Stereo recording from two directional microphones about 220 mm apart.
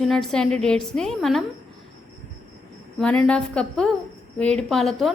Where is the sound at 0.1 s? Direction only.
Centre (ahead or behind).